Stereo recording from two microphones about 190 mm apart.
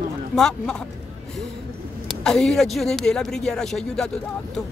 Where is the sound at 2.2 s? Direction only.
5° left (ahead or behind).